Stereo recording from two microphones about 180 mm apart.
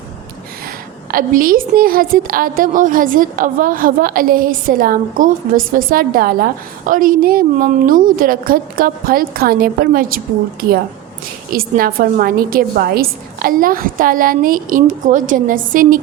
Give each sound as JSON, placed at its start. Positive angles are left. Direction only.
{"t": 1.1, "sound": "a woman's voice", "side_deg": -50}
{"t": 11.5, "sound": "a woman's voice", "side_deg": -55}